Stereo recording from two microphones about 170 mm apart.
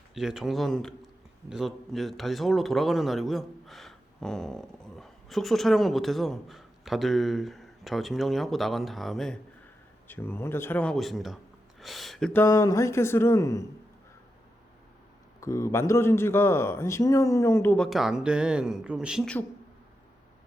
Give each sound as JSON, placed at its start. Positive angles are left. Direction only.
{"t": 0.1, "sound": "speech", "side_deg": -5}
{"t": 10.1, "sound": "a man's voice", "side_deg": 10}
{"t": 12.3, "sound": "a man's voice", "side_deg": 15}
{"t": 15.4, "sound": "a man's voice", "side_deg": 20}
{"t": 17.8, "sound": "speech", "side_deg": 0}